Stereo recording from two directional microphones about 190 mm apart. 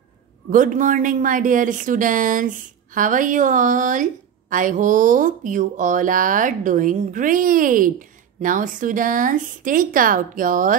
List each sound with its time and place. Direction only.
0.5 s speech: 45° right (ahead or behind)